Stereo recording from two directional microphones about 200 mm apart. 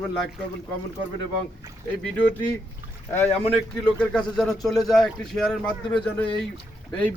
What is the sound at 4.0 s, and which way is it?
A man's voice, 5° left (ahead or behind).